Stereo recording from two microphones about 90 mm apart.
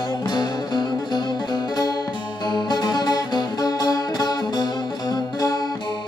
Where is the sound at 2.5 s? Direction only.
50° left (ahead or behind).